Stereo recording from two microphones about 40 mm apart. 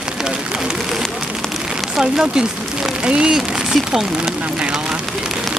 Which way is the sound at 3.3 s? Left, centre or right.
Centre.